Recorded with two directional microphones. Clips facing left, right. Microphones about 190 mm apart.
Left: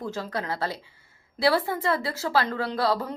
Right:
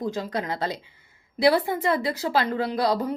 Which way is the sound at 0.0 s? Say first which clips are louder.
Right 3 dB; 15° right (ahead or behind).